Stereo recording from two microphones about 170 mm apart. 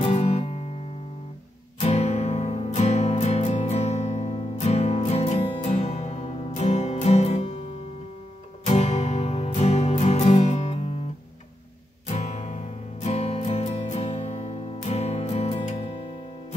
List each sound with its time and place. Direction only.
0.0 s music: 35° left (ahead or behind)
1.8 s music: 40° left (ahead or behind)
8.6 s music: 40° left (ahead or behind)
12.1 s music: 40° left (ahead or behind)